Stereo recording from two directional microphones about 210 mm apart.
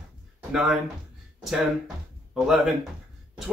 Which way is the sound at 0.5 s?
Centre (ahead or behind).